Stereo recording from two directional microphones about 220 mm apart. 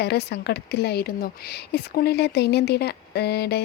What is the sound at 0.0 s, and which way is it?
Speech, 50° left (ahead or behind).